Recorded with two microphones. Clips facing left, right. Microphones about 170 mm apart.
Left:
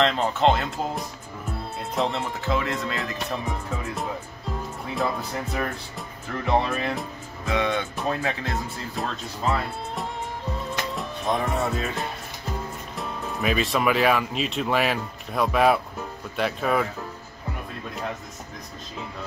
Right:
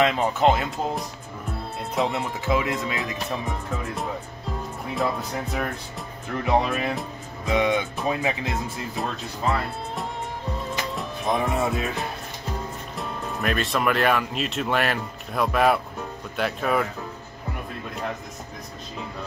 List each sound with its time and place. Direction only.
0.0 s speech: 5° right (ahead or behind)
8.9 s music: centre (ahead or behind)
12.9 s speech: centre (ahead or behind)